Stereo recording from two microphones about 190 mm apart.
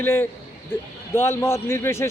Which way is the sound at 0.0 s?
10° left (ahead or behind).